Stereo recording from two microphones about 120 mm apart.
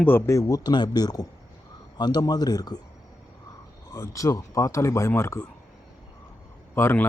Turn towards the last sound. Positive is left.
turn(degrees=20)  # may be behind; listen again after turning